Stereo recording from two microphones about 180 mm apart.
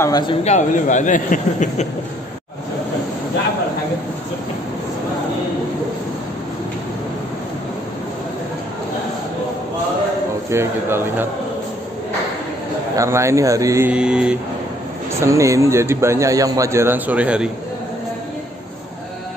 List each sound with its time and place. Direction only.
0.0 s speech: 20° left (ahead or behind)
0.4 s speech: 40° left (ahead or behind)
10.5 s a man's voice: 15° right (ahead or behind)
12.9 s a man's voice: 15° right (ahead or behind)
15.1 s a man's voice: 15° right (ahead or behind)